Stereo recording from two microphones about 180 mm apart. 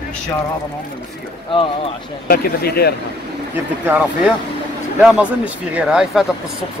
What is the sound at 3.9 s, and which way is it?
Speech, 10° right (ahead or behind).